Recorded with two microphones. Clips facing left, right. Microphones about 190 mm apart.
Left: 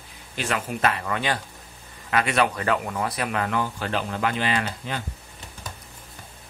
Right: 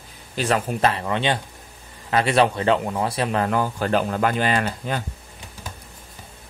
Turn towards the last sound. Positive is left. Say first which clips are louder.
# right 4 dB
turn(degrees=-45)  # may be behind; listen again after turning